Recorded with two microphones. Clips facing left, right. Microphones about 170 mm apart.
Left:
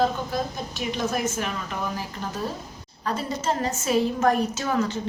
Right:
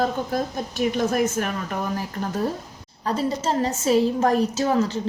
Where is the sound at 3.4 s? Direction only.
35° right (ahead or behind).